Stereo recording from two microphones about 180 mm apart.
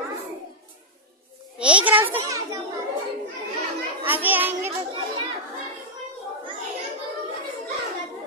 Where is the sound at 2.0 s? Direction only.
15° right (ahead or behind).